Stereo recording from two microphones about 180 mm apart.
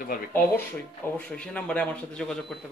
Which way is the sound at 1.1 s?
5° left (ahead or behind).